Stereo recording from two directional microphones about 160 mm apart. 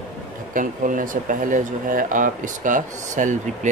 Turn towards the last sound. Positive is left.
turn(degrees=-50)  # may be behind; listen again after turning